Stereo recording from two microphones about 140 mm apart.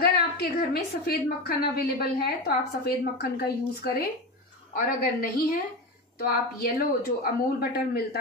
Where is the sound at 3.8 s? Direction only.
90° left.